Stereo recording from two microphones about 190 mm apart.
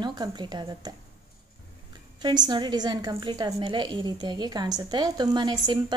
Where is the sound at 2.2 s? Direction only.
25° right (ahead or behind).